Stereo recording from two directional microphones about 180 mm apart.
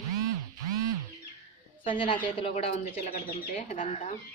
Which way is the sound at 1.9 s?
25° left (ahead or behind).